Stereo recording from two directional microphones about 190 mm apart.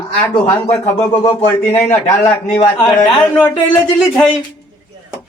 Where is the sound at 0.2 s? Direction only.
10° left (ahead or behind).